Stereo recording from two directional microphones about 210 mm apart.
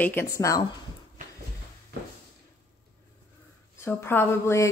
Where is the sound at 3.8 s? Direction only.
10° left (ahead or behind).